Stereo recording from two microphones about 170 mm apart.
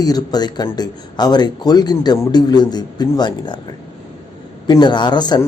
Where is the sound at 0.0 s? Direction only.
20° left (ahead or behind).